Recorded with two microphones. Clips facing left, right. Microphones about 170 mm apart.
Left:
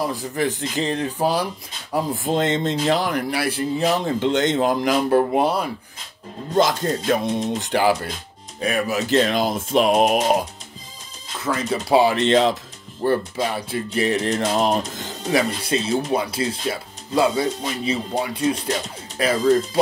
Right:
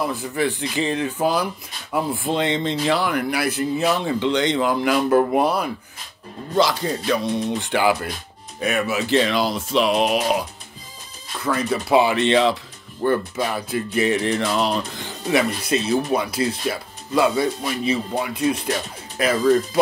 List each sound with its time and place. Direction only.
0.0 s speech: 35° left (ahead or behind)
4.9 s speech: 30° left (ahead or behind)
6.5 s speech: 50° left (ahead or behind)
11.4 s speech: 25° left (ahead or behind); by 12.5 s 45° left (ahead or behind)
13.0 s speech: 30° left (ahead or behind)